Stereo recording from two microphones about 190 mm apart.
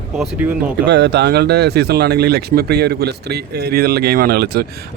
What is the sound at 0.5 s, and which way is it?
Speech, 65° right (ahead or behind).